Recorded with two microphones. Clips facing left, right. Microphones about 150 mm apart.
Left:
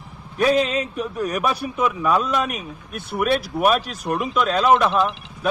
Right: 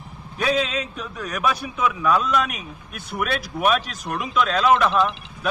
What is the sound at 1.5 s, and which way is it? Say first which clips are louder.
Speech: left 2 dB; 35° left (ahead or behind).